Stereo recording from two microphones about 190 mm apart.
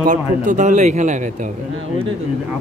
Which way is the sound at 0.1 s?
40° right (ahead or behind).